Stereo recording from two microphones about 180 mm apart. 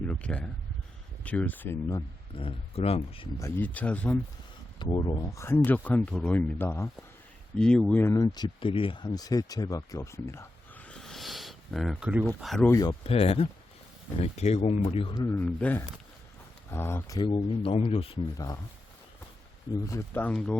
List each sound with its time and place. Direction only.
0.0 s a sound: 5° left (ahead or behind)
1.2 s speech: 10° left (ahead or behind)
2.3 s speech: 30° left (ahead or behind)
3.3 s speech: 15° left (ahead or behind)
4.8 s speech: 25° left (ahead or behind)
7.5 s speech: 5° left (ahead or behind)
12.6 s speech: 20° left (ahead or behind)
13.1 s speech: 35° left (ahead or behind)
15.1 s speech: 15° left (ahead or behind); by 18.2 s 30° left (ahead or behind)
18.3 s speech: 20° left (ahead or behind)
19.9 s speech: 10° left (ahead or behind)